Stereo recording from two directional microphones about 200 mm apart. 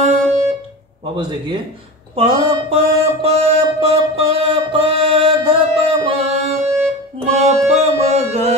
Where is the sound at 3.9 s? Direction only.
30° right (ahead or behind).